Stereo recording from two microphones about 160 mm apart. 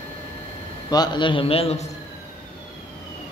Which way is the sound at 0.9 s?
25° left (ahead or behind).